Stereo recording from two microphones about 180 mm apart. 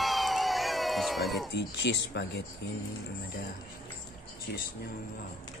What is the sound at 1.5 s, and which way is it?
Speech, 70° left (ahead or behind).